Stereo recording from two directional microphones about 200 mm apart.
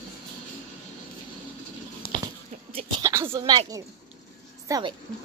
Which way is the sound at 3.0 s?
15° right (ahead or behind).